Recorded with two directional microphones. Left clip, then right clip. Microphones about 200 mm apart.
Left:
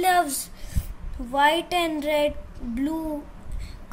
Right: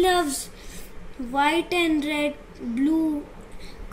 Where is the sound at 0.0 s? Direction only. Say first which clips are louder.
Even; 45° left (ahead or behind).